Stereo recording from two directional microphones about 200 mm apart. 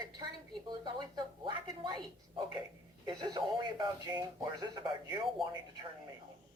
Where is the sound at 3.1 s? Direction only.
20° right (ahead or behind).